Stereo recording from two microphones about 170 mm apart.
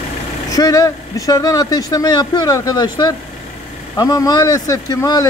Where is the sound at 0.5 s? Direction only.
20° left (ahead or behind).